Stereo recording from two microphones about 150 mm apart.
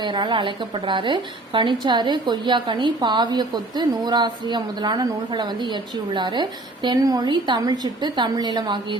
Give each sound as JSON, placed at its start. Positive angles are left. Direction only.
{"t": 0.0, "sound": "a woman's voice", "side_deg": -30}